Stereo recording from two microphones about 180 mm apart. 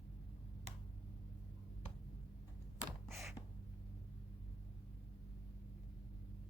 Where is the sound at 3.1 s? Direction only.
15° right (ahead or behind).